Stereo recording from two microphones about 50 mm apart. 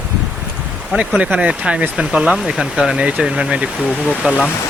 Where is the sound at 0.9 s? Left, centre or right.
Right.